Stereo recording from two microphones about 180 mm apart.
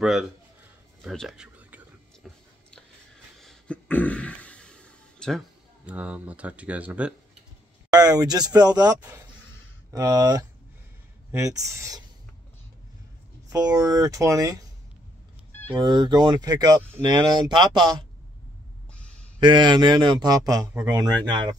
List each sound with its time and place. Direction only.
0.0 s speech: centre (ahead or behind)
1.0 s a sound: centre (ahead or behind)
2.2 s speech: centre (ahead or behind)
3.3 s a sound: 5° left (ahead or behind)
5.9 s speech: 10° right (ahead or behind)
7.9 s speech: 20° right (ahead or behind)
11.4 s speech: 20° right (ahead or behind)
13.5 s speech: 20° right (ahead or behind)
15.7 s speech: 25° right (ahead or behind)
18.9 s a sound: 5° left (ahead or behind)
19.4 s speech: 25° right (ahead or behind)